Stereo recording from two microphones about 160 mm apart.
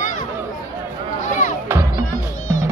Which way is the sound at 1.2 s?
50° left (ahead or behind).